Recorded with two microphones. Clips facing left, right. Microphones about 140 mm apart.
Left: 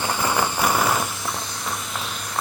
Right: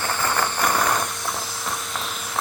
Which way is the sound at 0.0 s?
15° left (ahead or behind).